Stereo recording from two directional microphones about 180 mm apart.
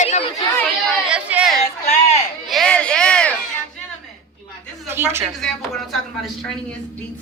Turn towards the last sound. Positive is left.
turn(degrees=0)  # may be behind; listen again after turning